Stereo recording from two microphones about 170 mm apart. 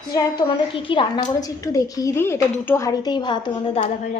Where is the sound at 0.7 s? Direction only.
30° left (ahead or behind).